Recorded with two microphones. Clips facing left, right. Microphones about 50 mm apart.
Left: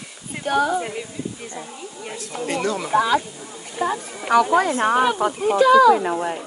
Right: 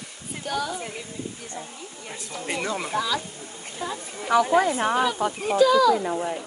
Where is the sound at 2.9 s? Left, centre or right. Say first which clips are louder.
Left 8 dB; left.